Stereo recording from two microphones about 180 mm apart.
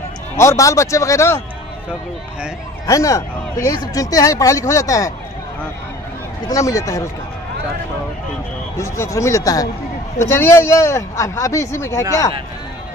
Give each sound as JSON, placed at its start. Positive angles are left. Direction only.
{"t": 0.4, "sound": "a man's voice", "side_deg": 15}
{"t": 2.9, "sound": "a man's voice", "side_deg": 15}
{"t": 6.5, "sound": "speech", "side_deg": 20}
{"t": 8.7, "sound": "a man's voice", "side_deg": 15}